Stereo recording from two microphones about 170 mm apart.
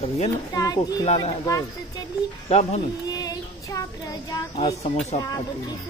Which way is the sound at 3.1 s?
20° left (ahead or behind).